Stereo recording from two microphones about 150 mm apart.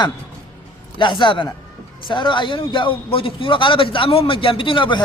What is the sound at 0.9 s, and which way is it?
A man's voice, 30° left (ahead or behind).